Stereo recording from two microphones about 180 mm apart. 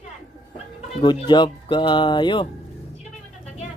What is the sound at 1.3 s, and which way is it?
Speech, 25° left (ahead or behind).